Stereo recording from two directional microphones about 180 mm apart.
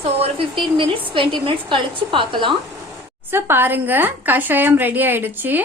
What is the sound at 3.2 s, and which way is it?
A woman's voice, 10° right (ahead or behind).